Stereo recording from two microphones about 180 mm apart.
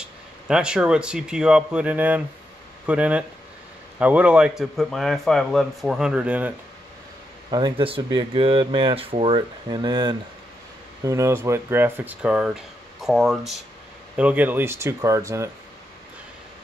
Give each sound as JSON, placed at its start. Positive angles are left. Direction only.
{"t": 0.5, "sound": "a man's voice", "side_deg": -5}
{"t": 7.5, "sound": "speech", "side_deg": -25}